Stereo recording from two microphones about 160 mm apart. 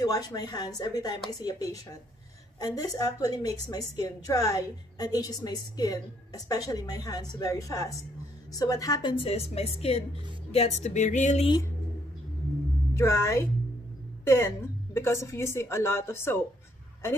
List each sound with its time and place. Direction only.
0.3 s a woman's voice: 25° left (ahead or behind); by 11.4 s 50° left (ahead or behind)
12.9 s a woman's voice: 15° left (ahead or behind)